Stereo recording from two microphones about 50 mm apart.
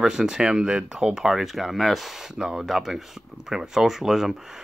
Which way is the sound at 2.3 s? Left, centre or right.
Centre.